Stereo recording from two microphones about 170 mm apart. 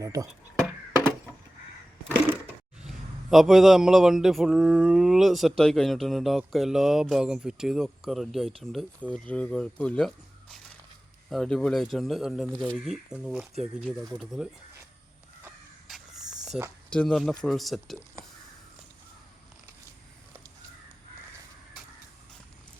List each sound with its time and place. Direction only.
0.0 s speech: 20° right (ahead or behind)
2.8 s a man's voice: centre (ahead or behind)
11.3 s a man's voice: 5° left (ahead or behind)
15.9 s snake: 5° right (ahead or behind)
16.9 s a man's voice: 5° left (ahead or behind)